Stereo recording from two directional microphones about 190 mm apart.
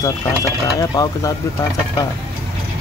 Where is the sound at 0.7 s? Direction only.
15° left (ahead or behind).